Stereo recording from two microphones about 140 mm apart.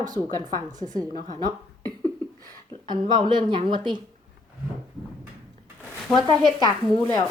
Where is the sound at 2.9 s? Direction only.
30° right (ahead or behind).